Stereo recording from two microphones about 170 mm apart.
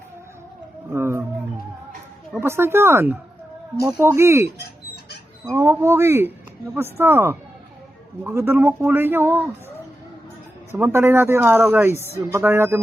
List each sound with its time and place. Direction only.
0.9 s wild animals: 15° right (ahead or behind)
2.4 s speech: 15° right (ahead or behind)
5.5 s speech: 15° right (ahead or behind)
10.7 s speech: 15° right (ahead or behind)